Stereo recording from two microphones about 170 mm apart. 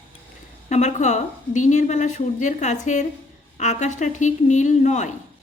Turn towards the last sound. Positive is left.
turn(degrees=45)  # may be behind; listen again after turning